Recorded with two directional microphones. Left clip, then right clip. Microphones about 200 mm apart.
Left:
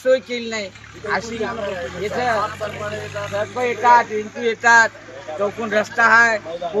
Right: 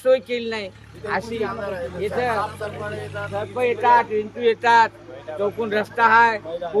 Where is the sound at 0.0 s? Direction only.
25° right (ahead or behind).